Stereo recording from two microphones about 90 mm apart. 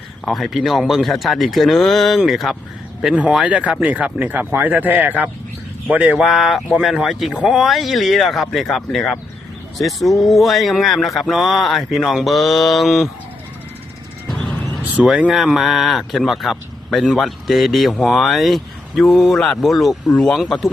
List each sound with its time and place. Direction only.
0.3 s speech: centre (ahead or behind)
14.9 s speech: 10° right (ahead or behind)
20.1 s speech: 10° left (ahead or behind)
20.4 s speech: centre (ahead or behind)